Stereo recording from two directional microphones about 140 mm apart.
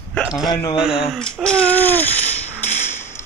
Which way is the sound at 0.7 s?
5° right (ahead or behind).